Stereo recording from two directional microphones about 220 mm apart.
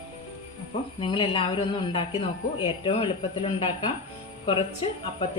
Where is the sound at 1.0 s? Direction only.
25° left (ahead or behind).